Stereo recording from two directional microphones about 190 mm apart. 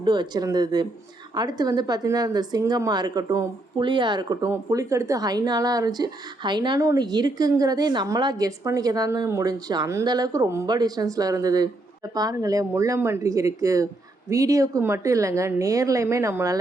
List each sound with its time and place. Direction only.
0.0 s a woman's voice: 25° right (ahead or behind)